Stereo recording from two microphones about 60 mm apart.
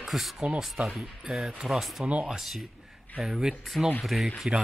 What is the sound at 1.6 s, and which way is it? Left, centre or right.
Speech, centre.